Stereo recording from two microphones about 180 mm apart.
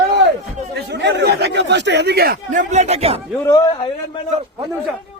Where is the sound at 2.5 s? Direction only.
40° right (ahead or behind).